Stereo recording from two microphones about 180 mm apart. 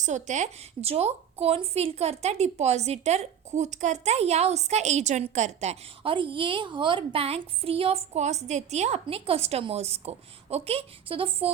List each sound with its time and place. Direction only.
0.0 s a woman's voice: 40° right (ahead or behind)